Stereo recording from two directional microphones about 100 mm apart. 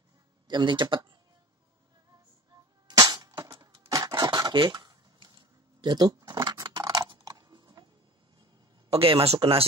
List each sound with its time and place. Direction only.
0.5 s speech: 50° right (ahead or behind)
2.9 s cap gun: 40° right (ahead or behind)
3.9 s a sound: 40° right (ahead or behind)
8.9 s speech: 65° right (ahead or behind)